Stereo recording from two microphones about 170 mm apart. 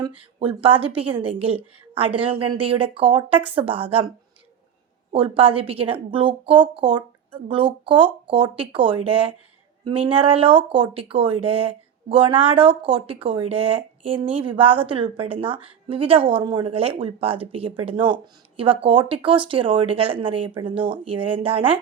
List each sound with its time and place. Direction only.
0.2 s speech: 30° right (ahead or behind)
5.1 s speech: 30° right (ahead or behind)
15.4 s speech: 10° right (ahead or behind)
15.9 s speech: 30° right (ahead or behind)